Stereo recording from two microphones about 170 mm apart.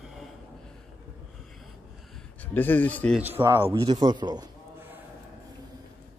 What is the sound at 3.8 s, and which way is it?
Speech, 25° right (ahead or behind).